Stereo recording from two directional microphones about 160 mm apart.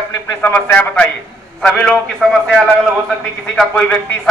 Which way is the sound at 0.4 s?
10° left (ahead or behind).